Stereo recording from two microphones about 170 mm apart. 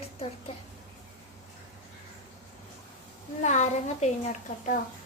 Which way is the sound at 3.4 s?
45° left (ahead or behind).